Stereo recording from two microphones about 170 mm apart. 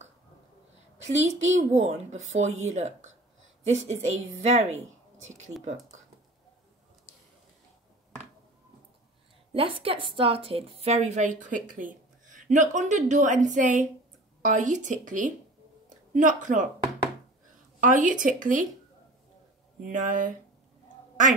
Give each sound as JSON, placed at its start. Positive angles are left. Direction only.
{"t": 1.2, "sound": "a woman's voice", "side_deg": -40}
{"t": 9.5, "sound": "a woman's voice", "side_deg": -30}
{"t": 17.7, "sound": "a woman's voice", "side_deg": -50}
{"t": 19.8, "sound": "a woman's voice", "side_deg": -50}